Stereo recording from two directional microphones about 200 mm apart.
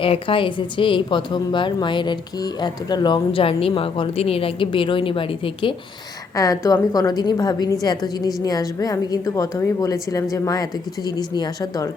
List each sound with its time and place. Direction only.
0.0 s speech: 25° left (ahead or behind)
6.3 s a woman's voice: 15° left (ahead or behind)